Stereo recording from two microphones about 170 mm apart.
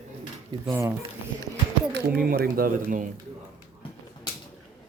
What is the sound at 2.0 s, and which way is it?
Speech, 60° right (ahead or behind).